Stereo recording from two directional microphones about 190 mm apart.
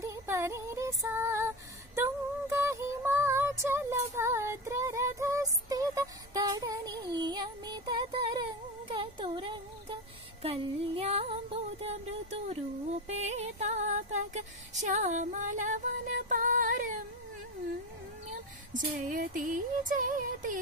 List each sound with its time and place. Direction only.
0.0 s female singing: 15° right (ahead or behind)
10.4 s music: 30° right (ahead or behind)
11.8 s a sound: 35° right (ahead or behind)
13.1 s music: 35° right (ahead or behind)
18.7 s music: 45° right (ahead or behind)